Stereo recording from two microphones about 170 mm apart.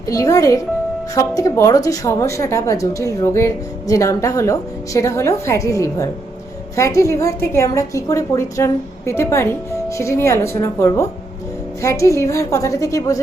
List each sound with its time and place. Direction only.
0.1 s a woman's voice: 20° left (ahead or behind)